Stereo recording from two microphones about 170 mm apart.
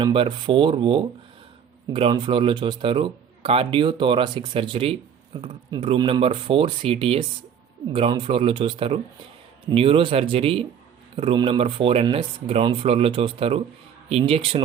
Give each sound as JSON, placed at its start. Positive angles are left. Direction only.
{"t": 0.0, "sound": "speech", "side_deg": -30}